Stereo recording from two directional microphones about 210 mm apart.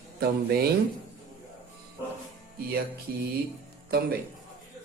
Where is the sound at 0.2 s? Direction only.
50° right (ahead or behind).